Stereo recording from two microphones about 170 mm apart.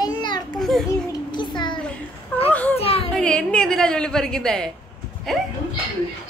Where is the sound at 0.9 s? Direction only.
25° left (ahead or behind).